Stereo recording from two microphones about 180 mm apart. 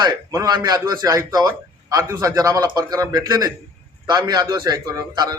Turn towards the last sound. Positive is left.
turn(degrees=-20)  # may be behind; listen again after turning